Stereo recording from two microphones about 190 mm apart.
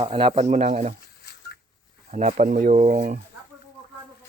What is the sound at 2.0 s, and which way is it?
Speech, 40° right (ahead or behind).